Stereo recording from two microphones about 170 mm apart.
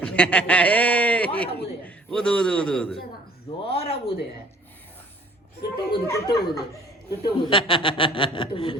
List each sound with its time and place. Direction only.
0.0 s a man's voice: 5° left (ahead or behind)
3.7 s speech: 35° left (ahead or behind)
5.9 s speech: 20° left (ahead or behind)